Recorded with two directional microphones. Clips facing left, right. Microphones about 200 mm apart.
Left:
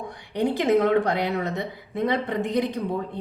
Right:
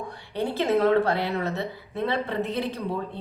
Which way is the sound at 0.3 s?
15° left (ahead or behind).